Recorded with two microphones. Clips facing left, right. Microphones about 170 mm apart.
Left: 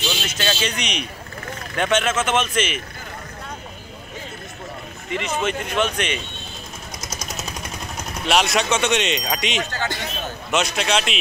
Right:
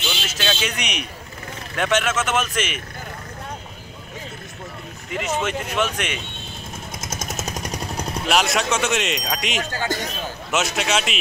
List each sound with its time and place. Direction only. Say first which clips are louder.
0.3 s speech: right 1 dB; centre (ahead or behind)
5.1 s speech: even; 5° right (ahead or behind)
7.0 s vehicle: right 2 dB; 50° right (ahead or behind)
8.3 s speech: left 2 dB; centre (ahead or behind)
9.8 s a man's voice: right 3 dB; 45° right (ahead or behind)
10.5 s speech: left 1 dB; 5° right (ahead or behind)